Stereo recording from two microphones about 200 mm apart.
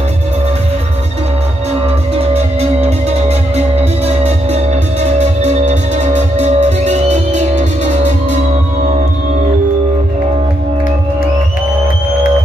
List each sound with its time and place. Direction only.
2.1 s music: 30° right (ahead or behind)